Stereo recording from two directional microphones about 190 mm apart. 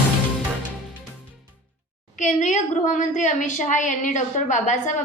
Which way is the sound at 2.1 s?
40° left (ahead or behind).